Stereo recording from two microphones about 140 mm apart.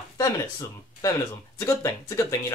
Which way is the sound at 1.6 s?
25° left (ahead or behind).